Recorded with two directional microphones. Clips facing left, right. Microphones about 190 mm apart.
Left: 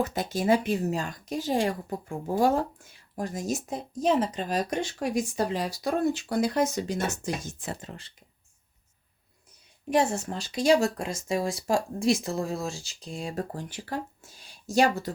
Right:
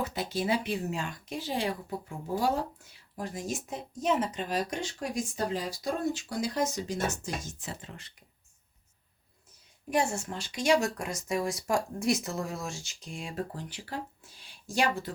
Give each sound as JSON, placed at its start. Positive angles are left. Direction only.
{"t": 0.0, "sound": "speech", "side_deg": 45}
{"t": 7.6, "sound": "speech", "side_deg": 40}
{"t": 9.9, "sound": "speech", "side_deg": 35}